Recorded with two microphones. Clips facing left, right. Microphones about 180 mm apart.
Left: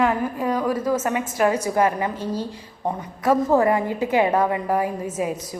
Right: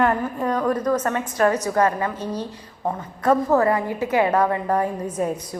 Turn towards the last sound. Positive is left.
turn(degrees=5)  # may be behind; listen again after turning